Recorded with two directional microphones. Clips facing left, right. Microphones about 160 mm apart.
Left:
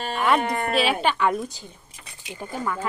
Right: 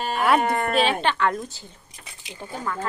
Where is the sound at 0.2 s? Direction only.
5° right (ahead or behind).